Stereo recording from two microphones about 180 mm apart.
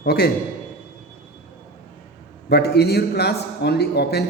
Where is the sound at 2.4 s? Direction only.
65° left (ahead or behind).